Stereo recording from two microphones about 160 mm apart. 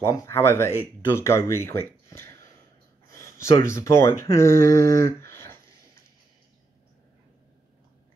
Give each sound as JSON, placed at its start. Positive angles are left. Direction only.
{"t": 0.0, "sound": "speech", "side_deg": 20}